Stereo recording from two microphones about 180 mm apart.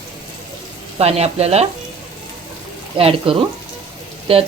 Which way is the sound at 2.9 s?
30° right (ahead or behind).